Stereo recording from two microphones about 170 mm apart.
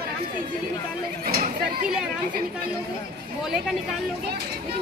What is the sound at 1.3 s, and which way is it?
Speech, 65° right (ahead or behind).